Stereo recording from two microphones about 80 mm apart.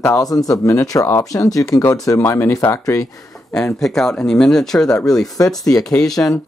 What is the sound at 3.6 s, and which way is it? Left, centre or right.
Speech, centre.